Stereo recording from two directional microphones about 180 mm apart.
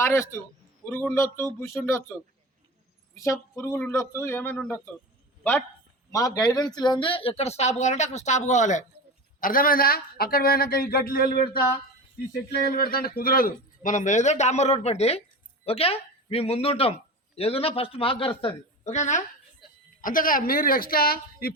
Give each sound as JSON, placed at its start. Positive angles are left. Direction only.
{"t": 0.0, "sound": "speech", "side_deg": 15}
{"t": 3.2, "sound": "speech", "side_deg": 15}
{"t": 12.6, "sound": "a man's voice", "side_deg": 55}